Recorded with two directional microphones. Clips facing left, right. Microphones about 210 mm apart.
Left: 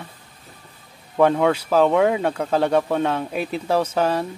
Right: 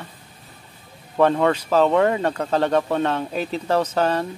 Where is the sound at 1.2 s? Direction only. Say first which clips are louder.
Left 1 dB; 10° left (ahead or behind).